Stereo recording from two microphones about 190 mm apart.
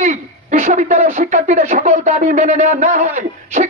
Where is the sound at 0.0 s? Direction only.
40° right (ahead or behind).